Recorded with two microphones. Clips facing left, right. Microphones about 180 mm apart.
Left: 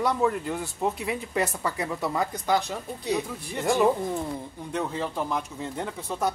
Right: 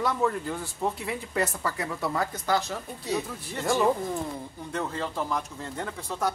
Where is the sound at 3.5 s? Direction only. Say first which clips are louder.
Left 2 dB; 15° left (ahead or behind).